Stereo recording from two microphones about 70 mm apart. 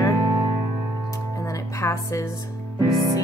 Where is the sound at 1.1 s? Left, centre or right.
Left.